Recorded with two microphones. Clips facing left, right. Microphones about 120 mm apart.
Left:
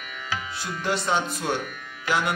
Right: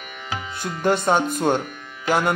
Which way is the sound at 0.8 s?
50° right (ahead or behind).